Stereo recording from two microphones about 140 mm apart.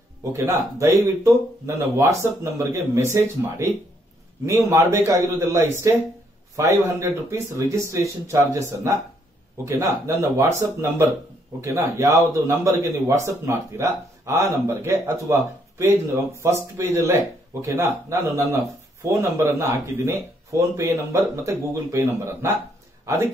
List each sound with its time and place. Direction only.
0.2 s speech: 20° right (ahead or behind)